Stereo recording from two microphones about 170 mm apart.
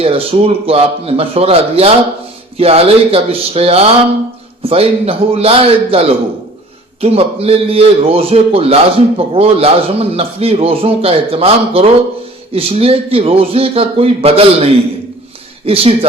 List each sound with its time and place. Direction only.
0.0 s a man's voice: 35° right (ahead or behind)